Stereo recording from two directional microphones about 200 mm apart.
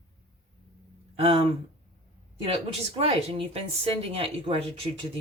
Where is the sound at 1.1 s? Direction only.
30° right (ahead or behind).